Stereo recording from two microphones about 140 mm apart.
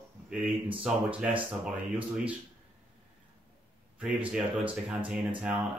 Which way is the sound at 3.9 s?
10° right (ahead or behind).